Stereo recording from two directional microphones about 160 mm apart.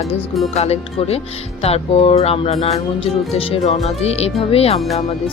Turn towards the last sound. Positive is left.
turn(degrees=40)  # may be behind; listen again after turning